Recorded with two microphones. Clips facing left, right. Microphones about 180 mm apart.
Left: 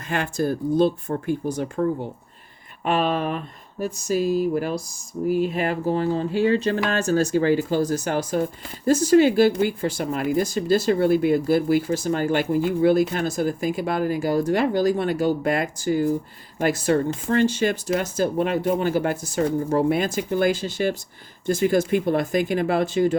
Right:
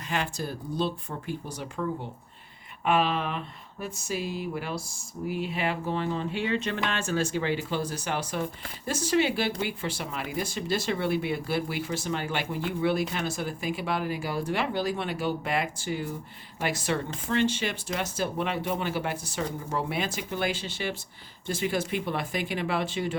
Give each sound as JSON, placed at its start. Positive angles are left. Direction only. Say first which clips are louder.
{"t": 0.1, "sound": "speech", "louder": "left 8 dB", "side_deg": 50}